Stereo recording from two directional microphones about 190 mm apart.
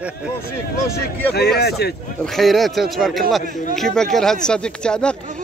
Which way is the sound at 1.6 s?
60° left (ahead or behind).